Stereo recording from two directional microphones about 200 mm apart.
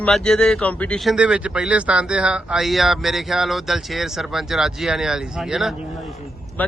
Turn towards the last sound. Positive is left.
turn(degrees=10)  # may be behind; listen again after turning